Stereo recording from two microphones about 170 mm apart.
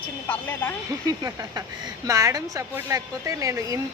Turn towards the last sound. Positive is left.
turn(degrees=-20)  # may be behind; listen again after turning